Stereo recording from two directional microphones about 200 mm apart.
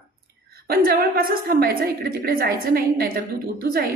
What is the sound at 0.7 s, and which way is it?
A woman's voice, 45° right (ahead or behind).